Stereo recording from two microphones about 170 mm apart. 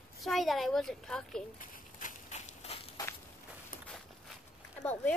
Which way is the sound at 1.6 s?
50° left (ahead or behind).